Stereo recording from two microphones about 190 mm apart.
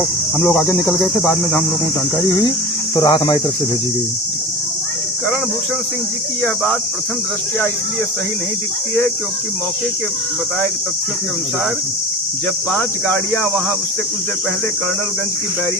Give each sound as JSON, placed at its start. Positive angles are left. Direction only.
{"t": 0.3, "sound": "speech", "side_deg": 0}
{"t": 2.9, "sound": "speech", "side_deg": 20}
{"t": 12.7, "sound": "speech", "side_deg": 10}